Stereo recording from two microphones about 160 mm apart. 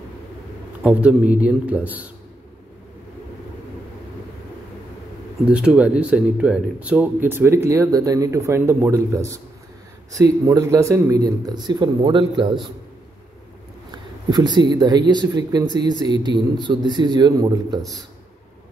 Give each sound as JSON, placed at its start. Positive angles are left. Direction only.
{"t": 0.8, "sound": "speech", "side_deg": -10}
{"t": 5.4, "sound": "speech", "side_deg": -5}
{"t": 14.3, "sound": "speech", "side_deg": -25}